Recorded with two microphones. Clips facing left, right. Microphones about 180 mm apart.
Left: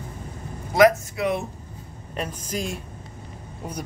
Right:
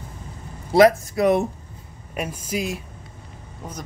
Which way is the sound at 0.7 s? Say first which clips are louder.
Right 2 dB; 30° right (ahead or behind).